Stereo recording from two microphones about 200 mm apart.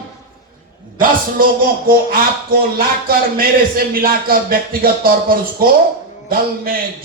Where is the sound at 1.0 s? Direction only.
45° right (ahead or behind).